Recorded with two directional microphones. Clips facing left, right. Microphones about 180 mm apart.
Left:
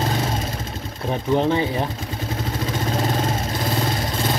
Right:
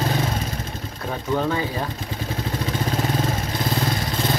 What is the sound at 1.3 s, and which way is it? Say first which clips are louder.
Speech: left 4 dB; 20° left (ahead or behind).